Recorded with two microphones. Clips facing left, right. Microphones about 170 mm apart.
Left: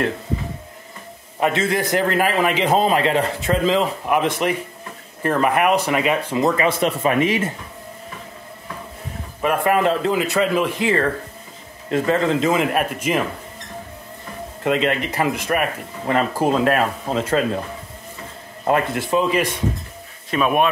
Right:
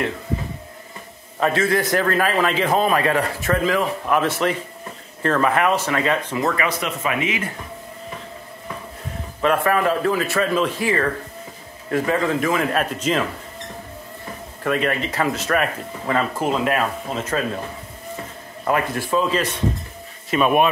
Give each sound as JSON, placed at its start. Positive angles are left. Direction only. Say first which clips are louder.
{"t": 1.4, "sound": "a man's voice", "louder": "even", "side_deg": 20}
{"t": 9.4, "sound": "speech", "louder": "left 1 dB", "side_deg": 15}
{"t": 11.9, "sound": "a man's voice", "louder": "left 2 dB", "side_deg": 25}
{"t": 14.6, "sound": "speech", "louder": "left 2 dB", "side_deg": 20}
{"t": 16.1, "sound": "speech", "louder": "left 3 dB", "side_deg": 30}
{"t": 18.6, "sound": "a man's voice", "louder": "left 2 dB", "side_deg": 30}
{"t": 20.2, "sound": "speech", "louder": "right 1 dB", "side_deg": 0}